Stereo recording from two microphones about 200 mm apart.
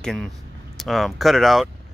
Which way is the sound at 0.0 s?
Centre (ahead or behind).